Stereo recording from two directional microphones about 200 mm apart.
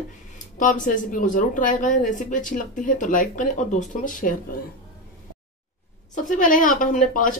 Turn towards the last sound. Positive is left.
turn(degrees=40)  # may be behind; listen again after turning